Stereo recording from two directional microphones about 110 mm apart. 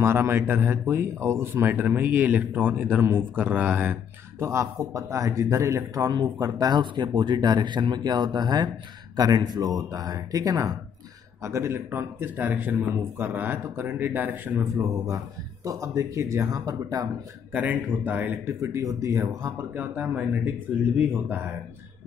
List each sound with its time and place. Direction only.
0.0 s speech: 20° right (ahead or behind)
4.4 s speech: 30° right (ahead or behind)
15.6 s speech: 30° right (ahead or behind)
17.5 s speech: 15° right (ahead or behind)
19.7 s speech: 15° right (ahead or behind)